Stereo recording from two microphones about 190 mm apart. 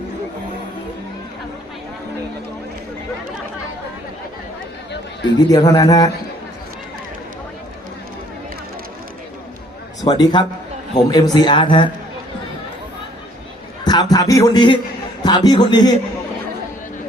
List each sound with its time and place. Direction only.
5.5 s speech: 20° left (ahead or behind)
10.0 s speech: 20° left (ahead or behind)
13.8 s speech: 20° left (ahead or behind)